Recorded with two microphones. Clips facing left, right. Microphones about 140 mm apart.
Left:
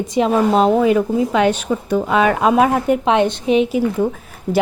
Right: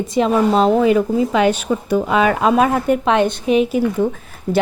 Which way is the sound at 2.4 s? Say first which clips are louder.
Left 1 dB; 15° left (ahead or behind).